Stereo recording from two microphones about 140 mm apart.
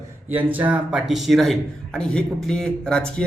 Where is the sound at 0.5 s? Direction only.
10° right (ahead or behind).